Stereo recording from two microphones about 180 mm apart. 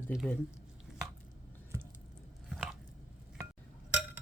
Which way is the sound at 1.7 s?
15° right (ahead or behind).